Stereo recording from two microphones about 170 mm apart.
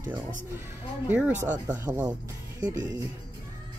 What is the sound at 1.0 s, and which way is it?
Speech, 10° right (ahead or behind).